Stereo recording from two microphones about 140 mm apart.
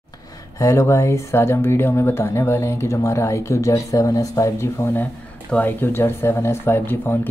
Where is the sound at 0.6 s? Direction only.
20° left (ahead or behind).